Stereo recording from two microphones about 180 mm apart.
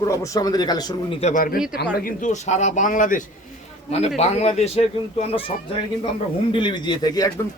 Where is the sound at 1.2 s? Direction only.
45° left (ahead or behind).